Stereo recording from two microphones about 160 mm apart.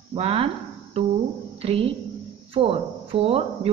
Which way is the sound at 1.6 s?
35° right (ahead or behind).